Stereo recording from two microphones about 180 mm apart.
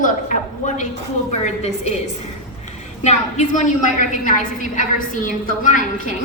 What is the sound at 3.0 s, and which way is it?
A woman's voice, 40° left (ahead or behind).